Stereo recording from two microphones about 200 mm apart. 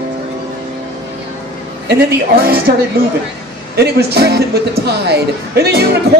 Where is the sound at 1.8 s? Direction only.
50° right (ahead or behind).